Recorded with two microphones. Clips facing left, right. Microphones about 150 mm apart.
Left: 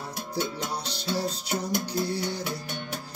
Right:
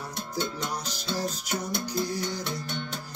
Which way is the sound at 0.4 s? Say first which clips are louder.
Left 1 dB; 10° left (ahead or behind).